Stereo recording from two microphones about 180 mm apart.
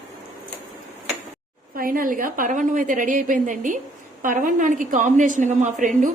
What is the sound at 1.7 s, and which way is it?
A woman's voice, 50° right (ahead or behind).